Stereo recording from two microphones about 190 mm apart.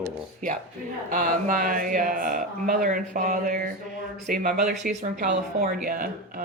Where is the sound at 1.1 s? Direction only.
45° right (ahead or behind).